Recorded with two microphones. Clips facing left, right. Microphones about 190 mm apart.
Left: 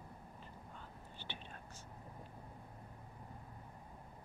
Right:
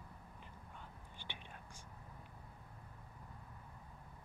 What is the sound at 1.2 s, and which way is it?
Whispering, 10° right (ahead or behind).